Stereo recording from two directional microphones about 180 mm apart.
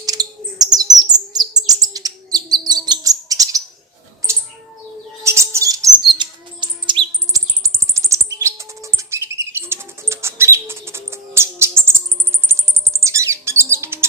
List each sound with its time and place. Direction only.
0.0 s chirp: 20° right (ahead or behind)
5.2 s chirp: 15° right (ahead or behind)
7.3 s bird: 15° right (ahead or behind)
12.5 s rodents: 15° right (ahead or behind)